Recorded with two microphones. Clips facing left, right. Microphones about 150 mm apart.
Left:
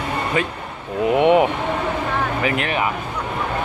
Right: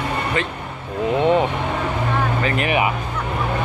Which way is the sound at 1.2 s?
15° left (ahead or behind).